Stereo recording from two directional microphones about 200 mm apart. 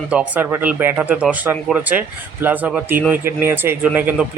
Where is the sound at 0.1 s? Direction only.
5° right (ahead or behind).